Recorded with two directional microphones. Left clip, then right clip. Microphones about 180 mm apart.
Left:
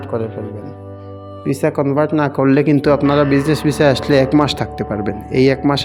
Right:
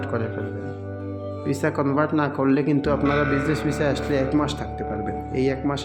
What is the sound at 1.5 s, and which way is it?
Speech, 30° left (ahead or behind).